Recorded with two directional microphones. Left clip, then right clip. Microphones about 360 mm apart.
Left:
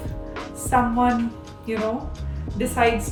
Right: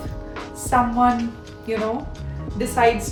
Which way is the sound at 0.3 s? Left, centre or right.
Centre.